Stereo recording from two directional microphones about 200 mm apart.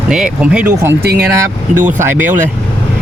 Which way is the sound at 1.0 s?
50° right (ahead or behind).